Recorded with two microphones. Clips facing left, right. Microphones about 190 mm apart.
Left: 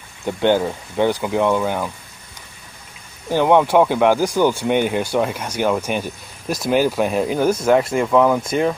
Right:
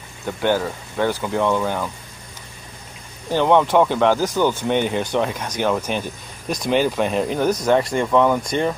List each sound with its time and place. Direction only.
0.4 s speech: 20° left (ahead or behind)
3.3 s speech: 10° left (ahead or behind)